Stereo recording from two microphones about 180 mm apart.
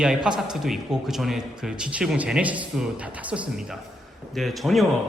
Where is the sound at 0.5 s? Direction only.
Centre (ahead or behind).